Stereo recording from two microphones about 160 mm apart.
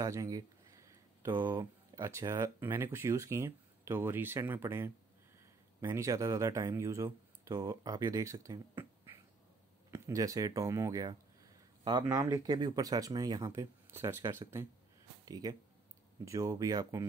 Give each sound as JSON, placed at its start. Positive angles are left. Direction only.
{"t": 0.0, "sound": "speech", "side_deg": -20}